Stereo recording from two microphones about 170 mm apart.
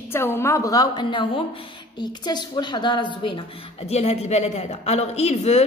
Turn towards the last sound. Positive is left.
turn(degrees=40)  # may be behind; listen again after turning